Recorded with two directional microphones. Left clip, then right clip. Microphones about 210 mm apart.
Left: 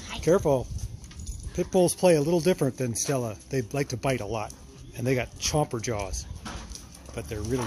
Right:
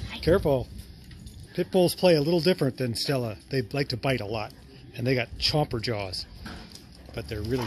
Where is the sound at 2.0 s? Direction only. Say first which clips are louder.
Even; 5° left (ahead or behind).